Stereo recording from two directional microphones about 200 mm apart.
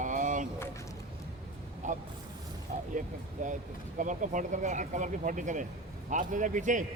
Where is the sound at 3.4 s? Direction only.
40° right (ahead or behind).